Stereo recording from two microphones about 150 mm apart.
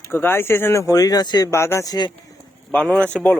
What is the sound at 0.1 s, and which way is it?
Speech, 15° left (ahead or behind).